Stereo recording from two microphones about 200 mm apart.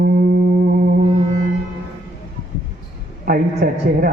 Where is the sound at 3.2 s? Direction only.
45° right (ahead or behind).